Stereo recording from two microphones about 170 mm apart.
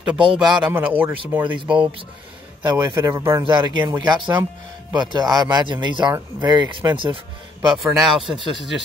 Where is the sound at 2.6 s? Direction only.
25° right (ahead or behind).